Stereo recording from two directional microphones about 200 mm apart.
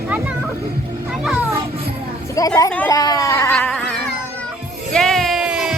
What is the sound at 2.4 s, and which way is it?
Speech, 15° left (ahead or behind).